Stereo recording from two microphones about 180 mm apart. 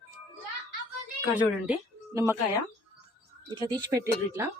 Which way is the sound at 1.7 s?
15° right (ahead or behind).